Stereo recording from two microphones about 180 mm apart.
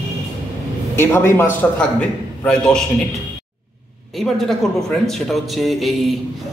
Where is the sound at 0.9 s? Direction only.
10° left (ahead or behind).